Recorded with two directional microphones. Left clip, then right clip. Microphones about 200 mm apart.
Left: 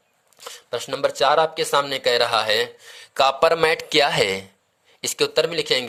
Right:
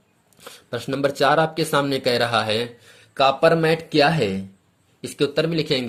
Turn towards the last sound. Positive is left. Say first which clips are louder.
# left 2 dB
turn(degrees=25)  # may be behind; listen again after turning